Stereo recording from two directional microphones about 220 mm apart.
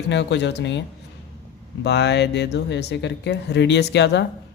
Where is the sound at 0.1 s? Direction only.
50° left (ahead or behind).